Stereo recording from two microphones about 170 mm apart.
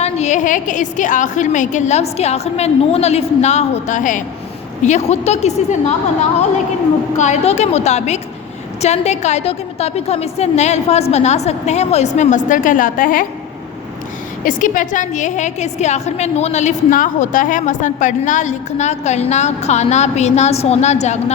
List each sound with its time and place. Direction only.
0.0 s a woman's voice: 45° left (ahead or behind)
7.2 s a woman's voice: 40° left (ahead or behind)
14.4 s a woman's voice: 50° left (ahead or behind)